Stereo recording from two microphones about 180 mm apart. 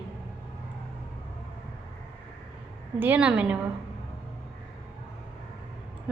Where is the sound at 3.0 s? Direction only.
10° right (ahead or behind).